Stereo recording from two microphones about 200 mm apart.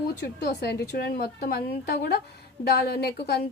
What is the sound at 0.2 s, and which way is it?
A woman's voice, 55° left (ahead or behind).